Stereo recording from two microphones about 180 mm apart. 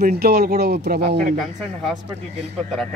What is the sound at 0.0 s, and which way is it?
Speech, 60° right (ahead or behind).